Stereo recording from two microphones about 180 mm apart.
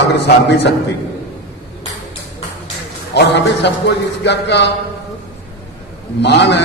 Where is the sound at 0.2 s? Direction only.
70° left (ahead or behind).